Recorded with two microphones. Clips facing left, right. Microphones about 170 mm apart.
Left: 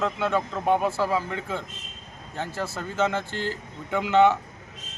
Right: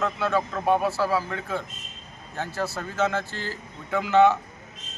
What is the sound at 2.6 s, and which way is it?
Speech, 10° right (ahead or behind).